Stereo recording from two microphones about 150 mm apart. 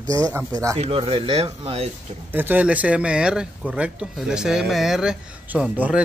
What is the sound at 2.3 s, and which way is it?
Speech, 15° right (ahead or behind).